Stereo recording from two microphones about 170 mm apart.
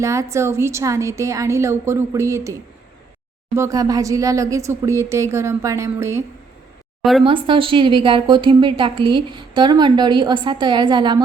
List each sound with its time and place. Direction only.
0.0 s speech: 15° right (ahead or behind)
7.0 s speech: centre (ahead or behind)
7.3 s a woman's voice: 30° right (ahead or behind)